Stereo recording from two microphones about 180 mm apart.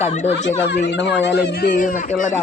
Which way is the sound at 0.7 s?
70° left (ahead or behind).